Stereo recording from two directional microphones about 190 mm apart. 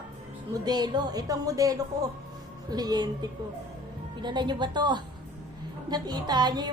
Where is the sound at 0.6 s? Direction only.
20° right (ahead or behind).